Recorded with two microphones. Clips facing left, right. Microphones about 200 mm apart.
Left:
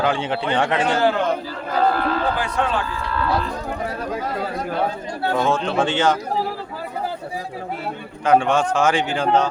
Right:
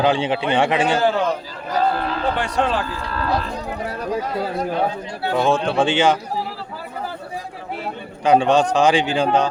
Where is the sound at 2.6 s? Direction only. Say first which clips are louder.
Right 2 dB; 35° right (ahead or behind).